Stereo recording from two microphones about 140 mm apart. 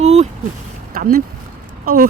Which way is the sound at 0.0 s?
50° right (ahead or behind).